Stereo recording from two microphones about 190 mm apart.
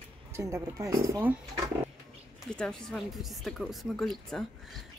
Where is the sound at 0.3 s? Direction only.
15° right (ahead or behind).